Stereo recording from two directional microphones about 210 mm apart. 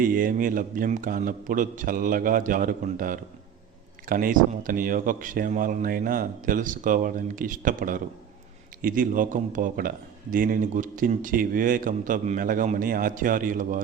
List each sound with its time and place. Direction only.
0.0 s speech: 40° right (ahead or behind)